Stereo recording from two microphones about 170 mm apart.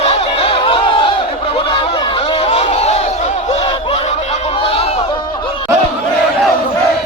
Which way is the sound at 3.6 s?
35° left (ahead or behind).